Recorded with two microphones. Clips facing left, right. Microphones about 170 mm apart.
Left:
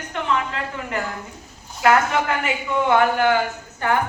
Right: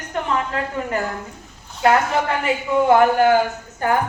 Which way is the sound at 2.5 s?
40° right (ahead or behind).